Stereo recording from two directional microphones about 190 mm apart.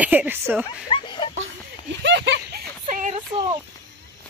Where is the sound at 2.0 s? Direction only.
65° right (ahead or behind).